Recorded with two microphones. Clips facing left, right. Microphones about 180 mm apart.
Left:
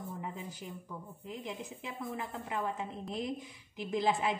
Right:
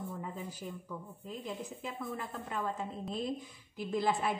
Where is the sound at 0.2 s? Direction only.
15° left (ahead or behind).